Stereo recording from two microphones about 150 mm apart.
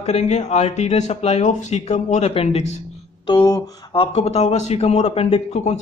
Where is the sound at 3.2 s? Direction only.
30° left (ahead or behind).